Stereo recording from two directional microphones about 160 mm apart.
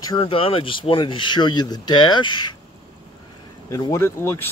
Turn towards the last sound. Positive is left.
turn(degrees=15)  # may be behind; listen again after turning